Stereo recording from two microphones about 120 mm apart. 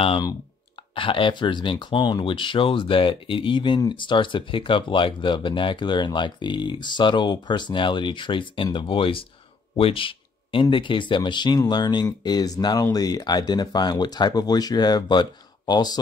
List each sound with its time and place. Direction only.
0.9 s speech: 45° left (ahead or behind)